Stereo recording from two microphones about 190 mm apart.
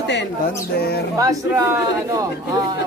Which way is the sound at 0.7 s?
55° left (ahead or behind).